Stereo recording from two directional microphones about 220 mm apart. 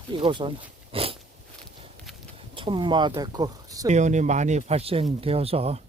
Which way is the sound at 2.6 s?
20° right (ahead or behind).